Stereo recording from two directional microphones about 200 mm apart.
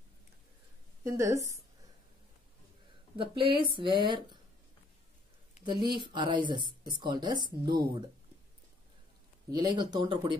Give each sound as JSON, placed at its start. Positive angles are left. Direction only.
{"t": 1.0, "sound": "a woman's voice", "side_deg": -15}
{"t": 3.2, "sound": "speech", "side_deg": -25}
{"t": 5.7, "sound": "speech", "side_deg": -25}
{"t": 9.5, "sound": "speech", "side_deg": -20}